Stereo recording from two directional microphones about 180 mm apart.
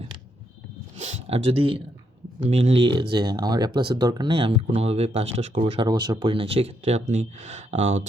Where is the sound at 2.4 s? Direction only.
35° right (ahead or behind).